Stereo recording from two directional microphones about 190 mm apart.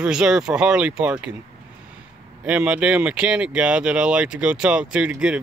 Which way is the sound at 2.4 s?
5° right (ahead or behind).